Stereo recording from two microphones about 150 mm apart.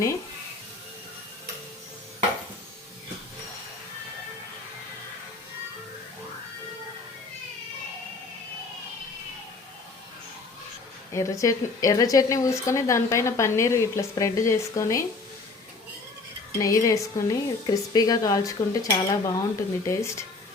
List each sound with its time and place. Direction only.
11.1 s speech: 20° left (ahead or behind)
16.6 s speech: 20° left (ahead or behind)